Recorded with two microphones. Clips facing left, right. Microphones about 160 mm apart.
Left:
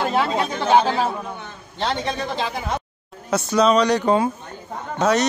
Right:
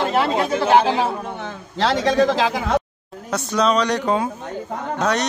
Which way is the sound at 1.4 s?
90° right.